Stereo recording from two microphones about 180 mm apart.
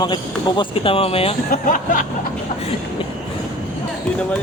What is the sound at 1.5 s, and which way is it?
Speech, 50° left (ahead or behind).